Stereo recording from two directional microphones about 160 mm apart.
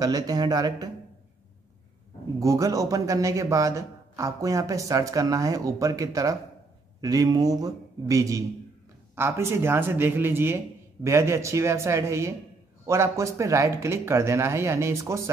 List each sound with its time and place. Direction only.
0.0 s a man's voice: 25° right (ahead or behind)
2.4 s a man's voice: 20° right (ahead or behind)